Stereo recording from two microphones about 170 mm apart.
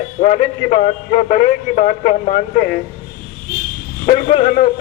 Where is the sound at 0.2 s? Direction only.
40° left (ahead or behind).